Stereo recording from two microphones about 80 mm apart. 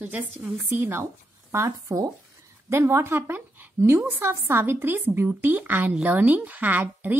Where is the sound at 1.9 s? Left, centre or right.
Right.